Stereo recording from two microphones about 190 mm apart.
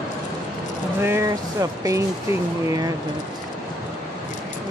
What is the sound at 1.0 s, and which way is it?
Speech, 15° right (ahead or behind).